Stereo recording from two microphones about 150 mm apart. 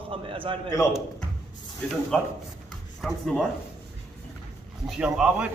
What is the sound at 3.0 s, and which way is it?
Speech, 5° left (ahead or behind).